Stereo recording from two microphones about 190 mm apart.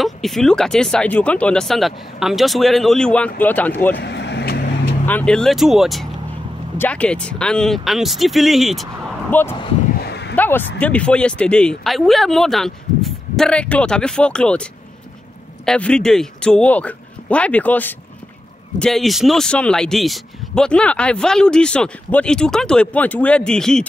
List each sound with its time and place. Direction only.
0.0 s speech: centre (ahead or behind)
4.0 s vehicle: 65° left (ahead or behind)
5.0 s speech: 5° left (ahead or behind)
9.3 s speech: 10° left (ahead or behind)
9.9 s a sound: 60° left (ahead or behind)
10.3 s a sound: 10° left (ahead or behind)
10.8 s speech: 5° left (ahead or behind)